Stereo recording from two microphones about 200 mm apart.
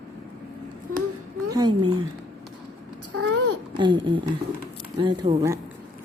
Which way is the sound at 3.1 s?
90° right.